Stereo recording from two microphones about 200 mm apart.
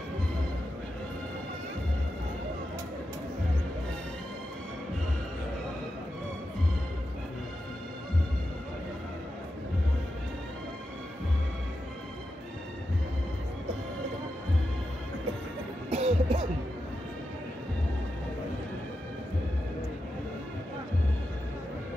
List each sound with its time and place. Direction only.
15.9 s music: 30° right (ahead or behind)